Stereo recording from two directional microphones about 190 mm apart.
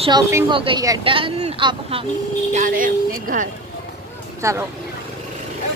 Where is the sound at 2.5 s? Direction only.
45° right (ahead or behind).